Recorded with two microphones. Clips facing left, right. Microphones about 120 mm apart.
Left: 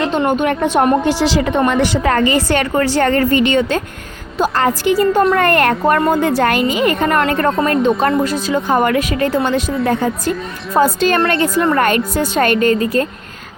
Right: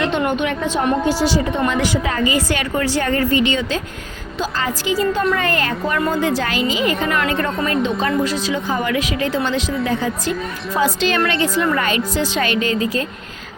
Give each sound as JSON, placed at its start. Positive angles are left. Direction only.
{"t": 0.0, "sound": "a woman's voice", "side_deg": 35}
{"t": 0.6, "sound": "a woman's voice", "side_deg": 55}